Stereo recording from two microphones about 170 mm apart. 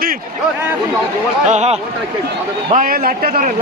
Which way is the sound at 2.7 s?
55° right (ahead or behind).